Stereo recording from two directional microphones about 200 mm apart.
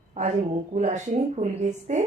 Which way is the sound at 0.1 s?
35° right (ahead or behind).